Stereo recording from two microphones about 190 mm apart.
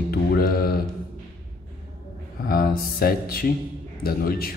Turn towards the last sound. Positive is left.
turn(degrees=50)  # may be behind; listen again after turning